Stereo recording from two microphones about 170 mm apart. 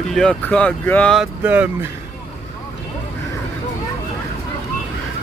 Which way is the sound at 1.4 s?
10° right (ahead or behind).